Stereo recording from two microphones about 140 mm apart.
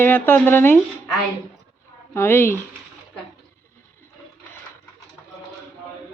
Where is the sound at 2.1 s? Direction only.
15° left (ahead or behind).